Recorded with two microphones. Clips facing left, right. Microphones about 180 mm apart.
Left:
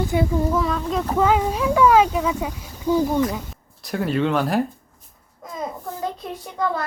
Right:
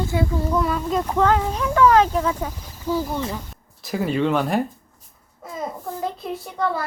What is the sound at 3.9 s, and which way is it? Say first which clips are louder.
Speech: even; centre (ahead or behind).